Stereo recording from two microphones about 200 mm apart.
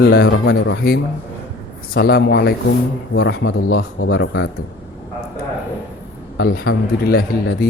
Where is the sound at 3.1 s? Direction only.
70° left (ahead or behind).